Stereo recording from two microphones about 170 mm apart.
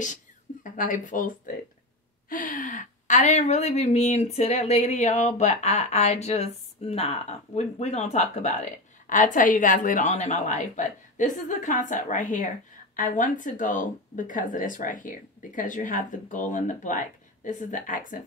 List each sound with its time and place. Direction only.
0.7 s speech: 50° left (ahead or behind)